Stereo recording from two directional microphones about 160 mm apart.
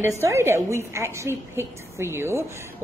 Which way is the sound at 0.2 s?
15° right (ahead or behind).